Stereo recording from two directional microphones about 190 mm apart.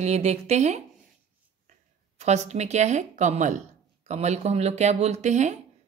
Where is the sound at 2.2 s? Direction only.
35° right (ahead or behind).